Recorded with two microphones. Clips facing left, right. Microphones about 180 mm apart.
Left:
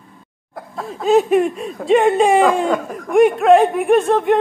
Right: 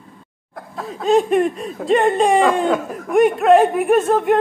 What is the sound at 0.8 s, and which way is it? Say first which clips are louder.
Speech: left 1 dB; centre (ahead or behind).